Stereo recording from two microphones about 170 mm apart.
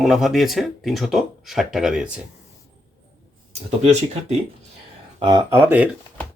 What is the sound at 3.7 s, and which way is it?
Speech, 40° right (ahead or behind).